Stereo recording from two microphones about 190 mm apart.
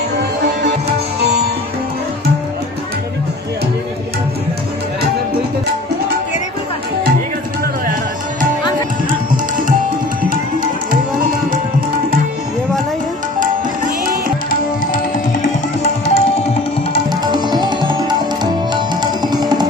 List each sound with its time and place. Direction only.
15.4 s tabla: 35° left (ahead or behind)
17.2 s music: 20° right (ahead or behind)